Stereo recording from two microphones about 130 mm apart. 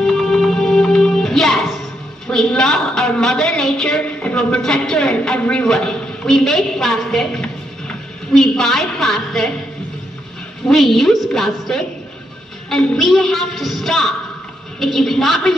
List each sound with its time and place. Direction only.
0.0 s music: 5° left (ahead or behind)
2.2 s a woman's voice: 5° left (ahead or behind)
10.7 s a woman's voice: centre (ahead or behind)